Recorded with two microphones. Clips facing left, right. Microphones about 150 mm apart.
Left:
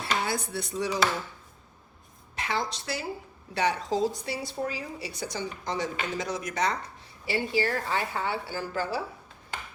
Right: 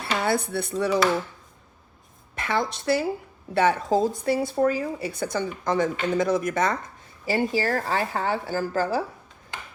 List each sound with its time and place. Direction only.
0.2 s speech: 60° right (ahead or behind)
2.3 s speech: 55° right (ahead or behind)